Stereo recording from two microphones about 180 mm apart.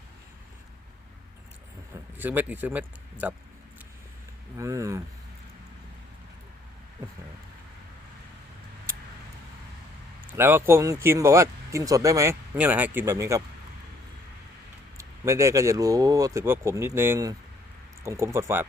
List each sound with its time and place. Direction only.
1.9 s speech: 10° right (ahead or behind)
4.5 s speech: 15° right (ahead or behind)
10.3 s speech: 15° right (ahead or behind)
14.9 s speech: 15° right (ahead or behind)